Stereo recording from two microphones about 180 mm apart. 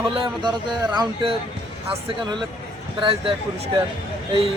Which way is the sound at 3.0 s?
30° right (ahead or behind).